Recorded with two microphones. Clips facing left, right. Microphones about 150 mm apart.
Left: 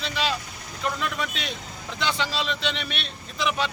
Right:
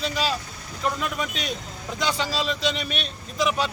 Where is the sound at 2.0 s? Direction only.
40° right (ahead or behind).